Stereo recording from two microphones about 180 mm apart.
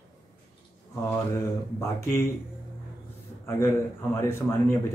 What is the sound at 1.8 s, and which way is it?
Speech, 15° left (ahead or behind).